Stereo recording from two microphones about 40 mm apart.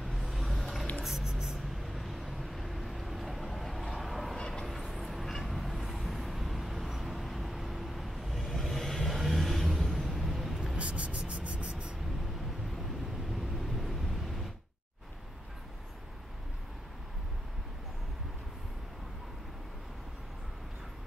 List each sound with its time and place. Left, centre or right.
0.0 s vehicle: centre
1.0 s a sound: centre
1.6 s vehicle: centre
3.8 s a sound: centre
4.4 s vehicle: centre
4.6 s vehicle: centre
10.1 s vehicle: centre
10.8 s a sound: right
13.6 s vehicle: centre